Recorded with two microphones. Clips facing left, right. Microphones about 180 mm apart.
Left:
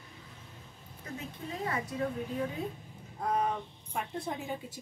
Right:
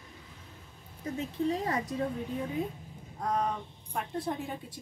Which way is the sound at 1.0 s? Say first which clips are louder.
Right 10 dB; 35° right (ahead or behind).